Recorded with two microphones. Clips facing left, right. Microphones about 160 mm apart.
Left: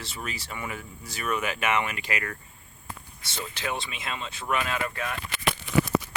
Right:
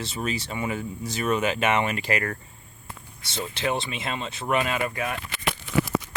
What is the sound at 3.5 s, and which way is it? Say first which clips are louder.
Speech: right 6 dB; 30° right (ahead or behind).